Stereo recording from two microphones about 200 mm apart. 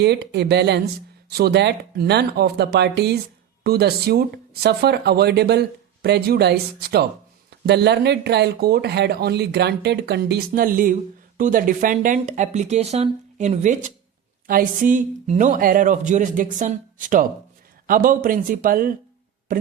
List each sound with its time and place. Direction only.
0.0 s speech: 55° right (ahead or behind)